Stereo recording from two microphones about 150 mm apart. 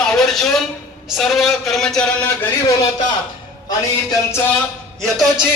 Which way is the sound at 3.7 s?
25° left (ahead or behind).